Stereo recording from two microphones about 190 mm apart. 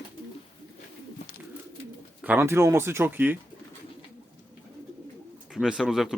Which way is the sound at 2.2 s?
10° right (ahead or behind).